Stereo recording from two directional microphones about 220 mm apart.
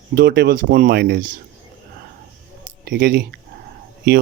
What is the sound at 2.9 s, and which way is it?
Speech, 45° right (ahead or behind).